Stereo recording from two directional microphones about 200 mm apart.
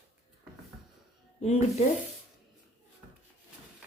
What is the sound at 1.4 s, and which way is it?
Speech, 35° left (ahead or behind).